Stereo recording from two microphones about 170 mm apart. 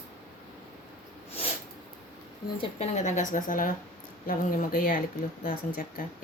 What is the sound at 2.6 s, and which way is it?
Speech, 40° left (ahead or behind).